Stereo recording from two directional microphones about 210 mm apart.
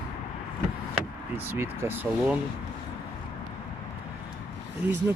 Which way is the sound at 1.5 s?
10° right (ahead or behind).